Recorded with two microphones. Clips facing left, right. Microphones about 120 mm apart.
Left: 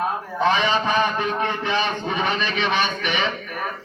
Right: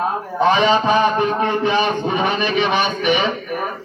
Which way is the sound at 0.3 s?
15° right (ahead or behind).